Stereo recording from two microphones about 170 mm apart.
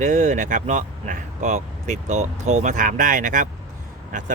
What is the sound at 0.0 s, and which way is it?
Speech, 45° right (ahead or behind).